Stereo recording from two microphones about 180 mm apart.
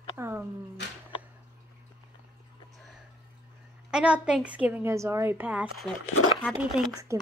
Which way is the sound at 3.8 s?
5° right (ahead or behind).